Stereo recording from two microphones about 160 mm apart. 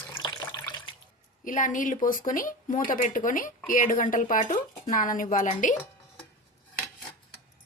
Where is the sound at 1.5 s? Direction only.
55° left (ahead or behind).